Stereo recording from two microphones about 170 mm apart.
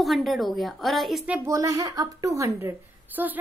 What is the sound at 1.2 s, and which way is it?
A woman's voice, 10° right (ahead or behind).